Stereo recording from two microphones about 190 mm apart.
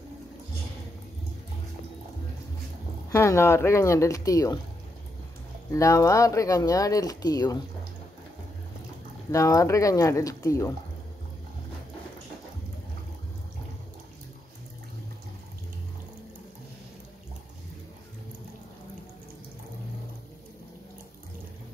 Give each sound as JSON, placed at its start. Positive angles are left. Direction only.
{"t": 3.1, "sound": "speech", "side_deg": 15}
{"t": 5.7, "sound": "speech", "side_deg": 15}
{"t": 9.3, "sound": "speech", "side_deg": 15}